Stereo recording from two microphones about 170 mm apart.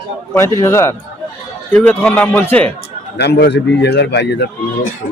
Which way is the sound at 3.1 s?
75° left (ahead or behind).